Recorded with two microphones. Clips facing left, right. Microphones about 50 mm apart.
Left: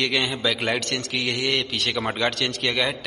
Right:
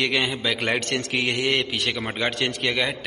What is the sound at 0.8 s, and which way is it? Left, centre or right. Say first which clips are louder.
Speech: right 2 dB; right.